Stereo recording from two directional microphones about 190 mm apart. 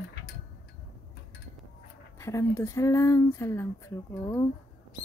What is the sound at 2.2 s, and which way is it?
Speech, 15° left (ahead or behind).